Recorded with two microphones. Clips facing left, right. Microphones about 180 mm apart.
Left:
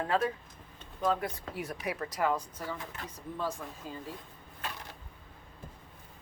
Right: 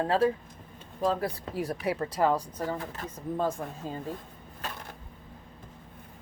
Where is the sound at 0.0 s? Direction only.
30° right (ahead or behind).